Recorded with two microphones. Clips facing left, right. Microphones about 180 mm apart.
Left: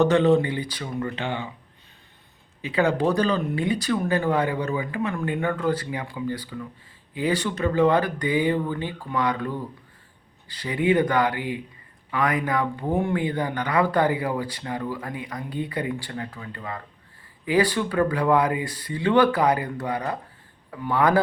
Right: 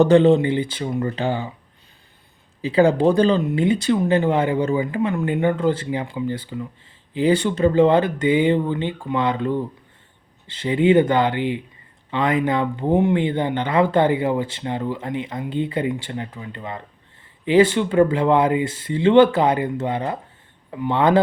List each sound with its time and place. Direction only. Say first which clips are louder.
0.0 s speech: right 5 dB; 30° right (ahead or behind)
2.6 s speech: right 6 dB; 30° right (ahead or behind)